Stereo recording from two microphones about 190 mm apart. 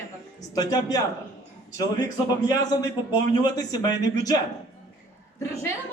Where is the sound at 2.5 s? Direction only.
20° left (ahead or behind).